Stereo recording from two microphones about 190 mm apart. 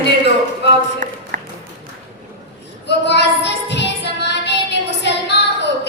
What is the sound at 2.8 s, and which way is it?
Child singing, 65° left (ahead or behind).